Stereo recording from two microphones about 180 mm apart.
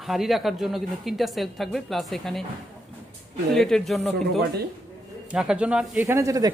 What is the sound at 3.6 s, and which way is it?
A man's voice, centre (ahead or behind).